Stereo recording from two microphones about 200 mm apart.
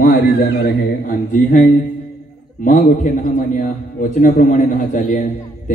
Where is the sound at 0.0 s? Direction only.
45° left (ahead or behind).